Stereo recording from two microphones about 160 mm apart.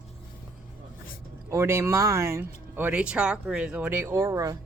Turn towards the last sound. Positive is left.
turn(degrees=-20)  # may be behind; listen again after turning